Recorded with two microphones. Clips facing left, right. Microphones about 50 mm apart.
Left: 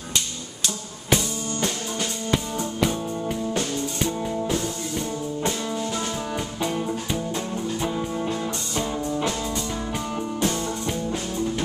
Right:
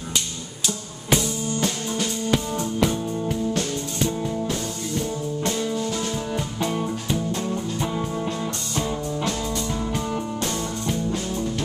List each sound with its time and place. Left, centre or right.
1.1 s music: centre